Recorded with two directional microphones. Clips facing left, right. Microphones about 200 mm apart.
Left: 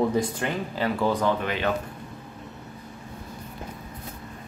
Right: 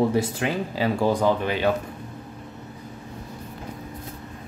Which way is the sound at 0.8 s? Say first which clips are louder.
Right 2 dB; 10° right (ahead or behind).